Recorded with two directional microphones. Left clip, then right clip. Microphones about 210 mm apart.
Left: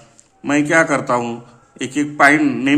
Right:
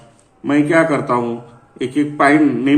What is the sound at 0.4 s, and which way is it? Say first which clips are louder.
A man's voice: right 1 dB; 35° left (ahead or behind).